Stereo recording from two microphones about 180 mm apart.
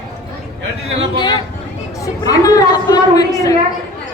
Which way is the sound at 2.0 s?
20° left (ahead or behind).